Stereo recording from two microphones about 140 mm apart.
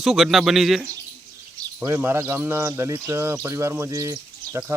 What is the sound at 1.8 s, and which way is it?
Speech, 15° right (ahead or behind).